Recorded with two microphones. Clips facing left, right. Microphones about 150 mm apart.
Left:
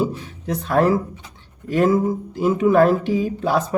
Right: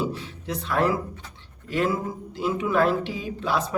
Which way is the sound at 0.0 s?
45° left (ahead or behind).